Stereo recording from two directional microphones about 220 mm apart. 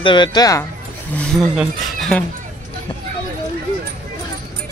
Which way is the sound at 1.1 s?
Centre (ahead or behind).